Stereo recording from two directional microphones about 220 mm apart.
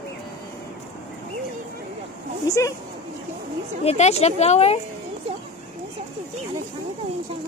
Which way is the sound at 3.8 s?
30° left (ahead or behind).